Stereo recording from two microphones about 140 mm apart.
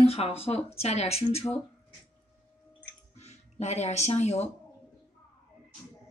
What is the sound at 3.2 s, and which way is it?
Speech, 50° left (ahead or behind).